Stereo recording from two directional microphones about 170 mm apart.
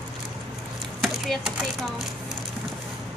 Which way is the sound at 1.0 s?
Centre (ahead or behind).